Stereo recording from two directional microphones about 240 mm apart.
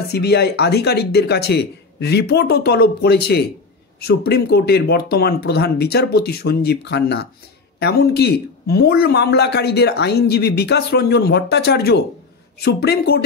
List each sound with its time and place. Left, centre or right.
0.1 s speech: left